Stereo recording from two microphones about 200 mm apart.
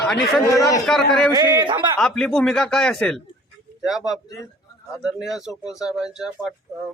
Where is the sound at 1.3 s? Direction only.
20° right (ahead or behind).